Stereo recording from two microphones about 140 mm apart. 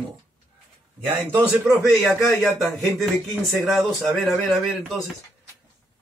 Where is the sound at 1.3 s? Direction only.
15° right (ahead or behind).